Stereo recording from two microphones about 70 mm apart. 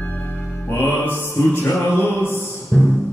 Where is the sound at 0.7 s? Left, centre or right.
Left.